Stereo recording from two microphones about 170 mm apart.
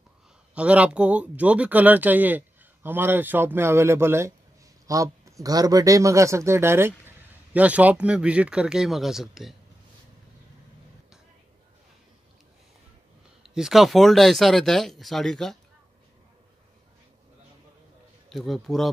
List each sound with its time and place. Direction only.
0.6 s speech: 5° right (ahead or behind)
13.4 s speech: centre (ahead or behind)
18.3 s speech: centre (ahead or behind)